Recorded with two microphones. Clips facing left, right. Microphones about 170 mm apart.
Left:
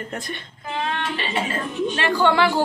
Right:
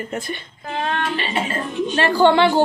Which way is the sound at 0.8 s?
50° right (ahead or behind).